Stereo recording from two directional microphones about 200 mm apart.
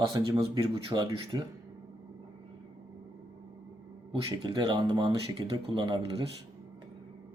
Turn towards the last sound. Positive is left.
turn(degrees=-25)  # may be behind; listen again after turning